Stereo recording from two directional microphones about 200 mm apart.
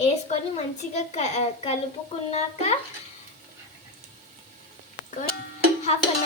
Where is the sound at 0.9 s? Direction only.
35° left (ahead or behind).